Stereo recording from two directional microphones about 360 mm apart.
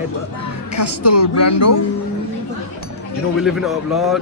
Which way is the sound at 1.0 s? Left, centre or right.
Left.